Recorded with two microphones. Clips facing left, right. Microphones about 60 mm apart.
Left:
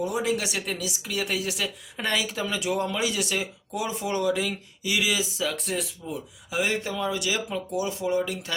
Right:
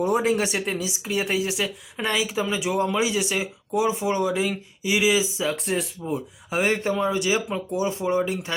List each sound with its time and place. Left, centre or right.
0.0 s speech: right
0.5 s a woman's voice: centre
0.8 s speech: right
1.2 s speech: centre; by 5.5 s right
5.5 s speech: centre
6.5 s speech: right